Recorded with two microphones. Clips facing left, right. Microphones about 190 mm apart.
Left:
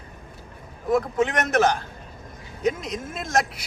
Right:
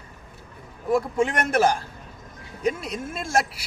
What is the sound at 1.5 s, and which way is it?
A man's voice, 10° right (ahead or behind).